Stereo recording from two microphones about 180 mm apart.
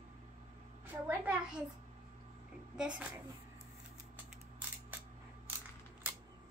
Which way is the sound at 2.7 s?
5° right (ahead or behind).